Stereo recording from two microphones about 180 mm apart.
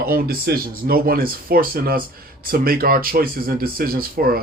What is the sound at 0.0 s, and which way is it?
Speech, 55° right (ahead or behind).